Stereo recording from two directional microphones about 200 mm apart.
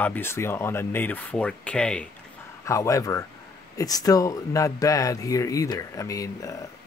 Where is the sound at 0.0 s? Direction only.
10° left (ahead or behind).